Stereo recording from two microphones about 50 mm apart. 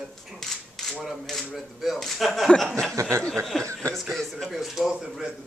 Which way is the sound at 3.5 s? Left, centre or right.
Centre.